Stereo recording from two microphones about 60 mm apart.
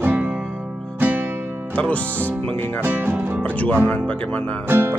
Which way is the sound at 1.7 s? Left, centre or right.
Left.